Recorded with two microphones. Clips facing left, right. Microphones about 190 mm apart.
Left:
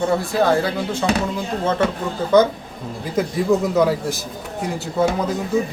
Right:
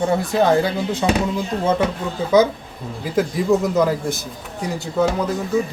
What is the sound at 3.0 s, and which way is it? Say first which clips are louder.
A man's voice: right 1 dB; centre (ahead or behind).